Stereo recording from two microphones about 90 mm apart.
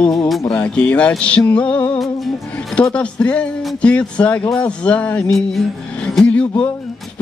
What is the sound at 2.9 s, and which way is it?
Speech, 15° left (ahead or behind).